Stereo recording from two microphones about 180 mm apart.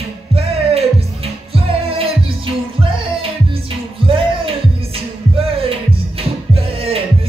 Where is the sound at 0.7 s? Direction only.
35° right (ahead or behind).